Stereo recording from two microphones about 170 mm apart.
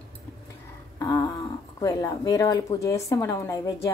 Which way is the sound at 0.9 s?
20° left (ahead or behind).